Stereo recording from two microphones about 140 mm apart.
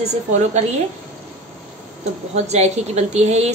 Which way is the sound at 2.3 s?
50° right (ahead or behind).